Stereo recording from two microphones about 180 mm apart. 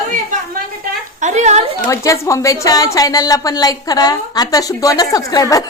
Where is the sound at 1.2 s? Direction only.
40° right (ahead or behind).